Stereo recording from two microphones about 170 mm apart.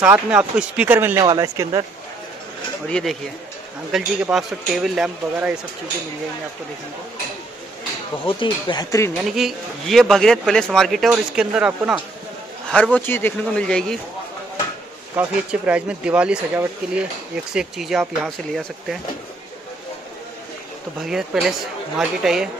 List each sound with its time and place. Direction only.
0.0 s speech: 5° right (ahead or behind)
2.9 s speech: centre (ahead or behind)
8.3 s speech: 30° left (ahead or behind)
9.3 s speech: centre (ahead or behind)
12.6 s a man's voice: 5° left (ahead or behind)
15.1 s speech: 10° right (ahead or behind)
21.0 s speech: centre (ahead or behind)